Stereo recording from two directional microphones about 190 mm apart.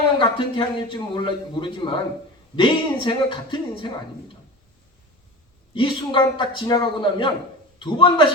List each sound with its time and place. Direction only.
0.2 s a man's voice: 25° left (ahead or behind)
5.7 s a man's voice: 25° left (ahead or behind)